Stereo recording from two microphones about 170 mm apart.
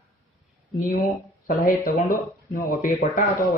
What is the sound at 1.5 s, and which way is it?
Speech, 60° left (ahead or behind).